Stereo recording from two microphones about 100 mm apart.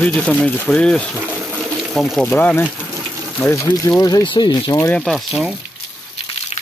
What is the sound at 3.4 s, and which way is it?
Speech, 25° left (ahead or behind).